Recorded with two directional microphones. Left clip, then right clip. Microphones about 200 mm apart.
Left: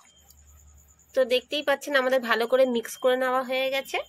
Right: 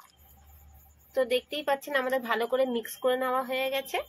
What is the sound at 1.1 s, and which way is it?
Speech, 30° left (ahead or behind).